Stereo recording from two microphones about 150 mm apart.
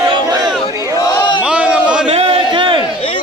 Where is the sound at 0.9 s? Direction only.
25° left (ahead or behind).